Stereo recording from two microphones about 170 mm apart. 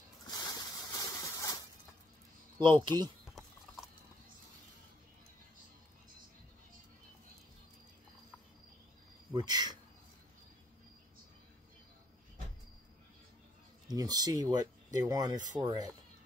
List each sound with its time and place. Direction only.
0.3 s a sound: 25° left (ahead or behind)
2.6 s speech: 30° right (ahead or behind)
9.3 s speech: 25° right (ahead or behind)
13.8 s speech: 20° right (ahead or behind)